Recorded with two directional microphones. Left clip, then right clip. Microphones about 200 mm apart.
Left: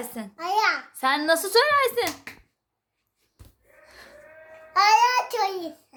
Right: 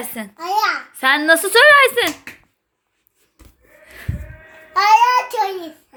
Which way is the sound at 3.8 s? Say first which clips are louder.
Right 9 dB; 5° left (ahead or behind).